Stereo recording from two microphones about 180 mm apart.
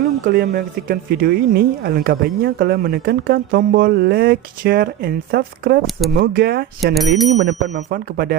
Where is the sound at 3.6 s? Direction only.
55° right (ahead or behind).